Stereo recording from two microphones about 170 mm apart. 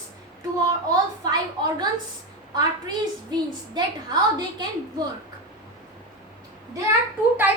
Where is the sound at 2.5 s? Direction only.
25° right (ahead or behind).